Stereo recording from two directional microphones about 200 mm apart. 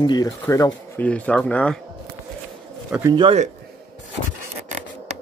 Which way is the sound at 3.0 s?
25° right (ahead or behind).